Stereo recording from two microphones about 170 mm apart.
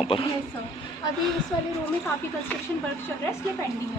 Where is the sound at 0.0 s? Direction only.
30° left (ahead or behind).